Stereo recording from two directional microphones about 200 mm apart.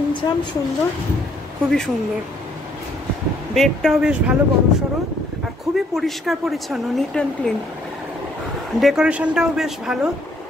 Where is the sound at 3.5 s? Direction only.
Centre (ahead or behind).